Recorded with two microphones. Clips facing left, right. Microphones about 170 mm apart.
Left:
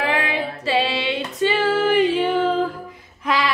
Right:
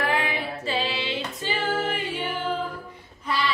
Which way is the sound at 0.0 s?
90° left.